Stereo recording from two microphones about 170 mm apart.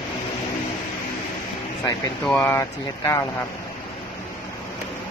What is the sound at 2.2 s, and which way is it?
Speech, 10° left (ahead or behind).